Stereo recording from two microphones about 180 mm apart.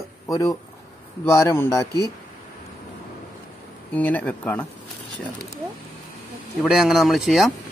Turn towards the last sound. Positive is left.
turn(degrees=0)  # may be behind; listen again after turning